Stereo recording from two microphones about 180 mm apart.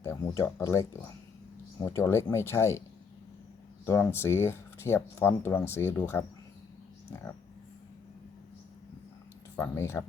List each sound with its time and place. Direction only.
0.0 s speech: 15° left (ahead or behind)
3.8 s speech: 15° left (ahead or behind)
9.6 s speech: 15° left (ahead or behind)